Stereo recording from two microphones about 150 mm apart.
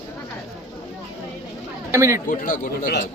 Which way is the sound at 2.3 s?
65° left (ahead or behind).